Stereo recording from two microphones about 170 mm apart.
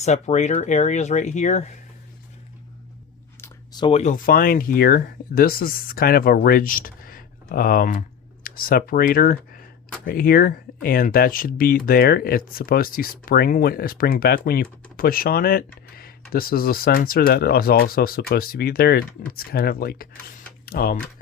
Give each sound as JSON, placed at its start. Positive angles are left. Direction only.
{"t": 0.0, "sound": "speech", "side_deg": 40}
{"t": 3.4, "sound": "a sound", "side_deg": 25}
{"t": 3.9, "sound": "speech", "side_deg": 45}